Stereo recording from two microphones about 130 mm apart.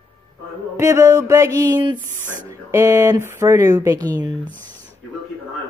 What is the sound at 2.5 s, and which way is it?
Speech, 25° right (ahead or behind).